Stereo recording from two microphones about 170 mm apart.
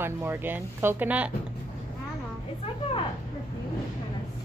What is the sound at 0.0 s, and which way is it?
Speech, 15° right (ahead or behind).